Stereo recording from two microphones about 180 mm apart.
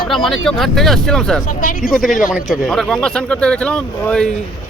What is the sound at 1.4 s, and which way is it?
Speech, 45° left (ahead or behind).